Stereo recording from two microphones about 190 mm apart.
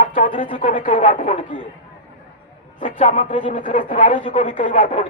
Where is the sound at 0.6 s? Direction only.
45° left (ahead or behind).